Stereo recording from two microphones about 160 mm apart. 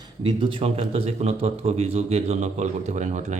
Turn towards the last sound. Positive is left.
turn(degrees=-45)  # may be behind; listen again after turning